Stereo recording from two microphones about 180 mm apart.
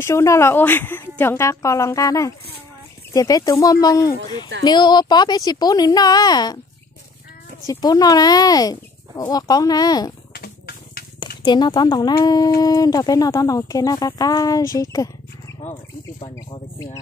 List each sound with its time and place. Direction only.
0.0 s a woman's voice: 15° left (ahead or behind)
7.6 s speech: 20° left (ahead or behind)
10.3 s a sound: 60° left (ahead or behind)
11.1 s speech: 25° left (ahead or behind)
16.7 s a woman's voice: 15° left (ahead or behind)